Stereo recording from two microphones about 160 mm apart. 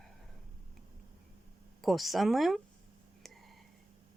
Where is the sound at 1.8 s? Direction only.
Centre (ahead or behind).